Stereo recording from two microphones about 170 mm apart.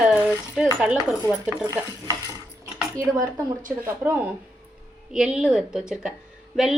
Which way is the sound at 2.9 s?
20° right (ahead or behind).